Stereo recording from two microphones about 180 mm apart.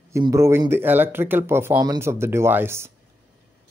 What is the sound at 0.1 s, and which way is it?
Speech, 15° right (ahead or behind).